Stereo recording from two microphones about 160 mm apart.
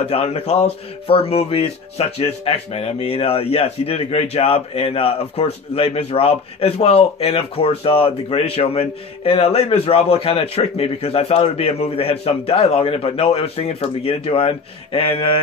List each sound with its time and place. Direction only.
0.0 s speech: 40° left (ahead or behind)